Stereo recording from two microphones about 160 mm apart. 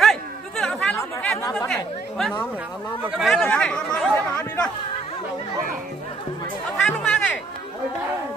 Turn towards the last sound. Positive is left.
turn(degrees=5)  # may be behind; listen again after turning